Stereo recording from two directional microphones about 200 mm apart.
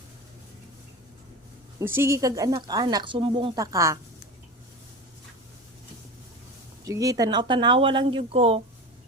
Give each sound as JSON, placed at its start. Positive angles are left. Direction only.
{"t": 1.8, "sound": "speech", "side_deg": -10}
{"t": 6.8, "sound": "speech", "side_deg": -15}